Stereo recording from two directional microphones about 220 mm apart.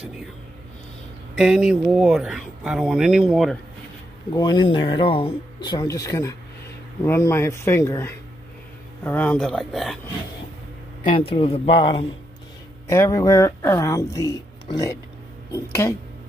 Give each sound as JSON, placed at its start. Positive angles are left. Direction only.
{"t": 1.3, "sound": "speech", "side_deg": -5}
{"t": 4.3, "sound": "speech", "side_deg": 20}
{"t": 11.1, "sound": "speech", "side_deg": 25}
{"t": 12.8, "sound": "speech", "side_deg": 10}